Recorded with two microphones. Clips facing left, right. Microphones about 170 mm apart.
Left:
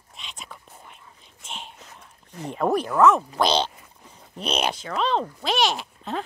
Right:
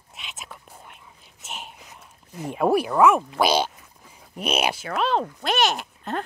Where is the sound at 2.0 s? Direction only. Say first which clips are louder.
Right 2 dB; 5° right (ahead or behind).